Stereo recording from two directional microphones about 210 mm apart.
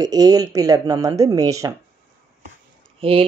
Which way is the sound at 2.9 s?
25° right (ahead or behind).